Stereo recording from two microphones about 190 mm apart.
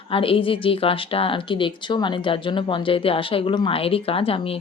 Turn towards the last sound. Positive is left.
turn(degrees=30)  # may be behind; listen again after turning